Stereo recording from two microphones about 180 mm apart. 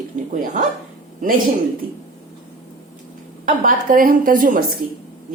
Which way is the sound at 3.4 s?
50° right (ahead or behind).